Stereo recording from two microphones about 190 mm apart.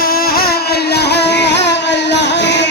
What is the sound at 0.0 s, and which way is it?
Motorboat, 50° left (ahead or behind).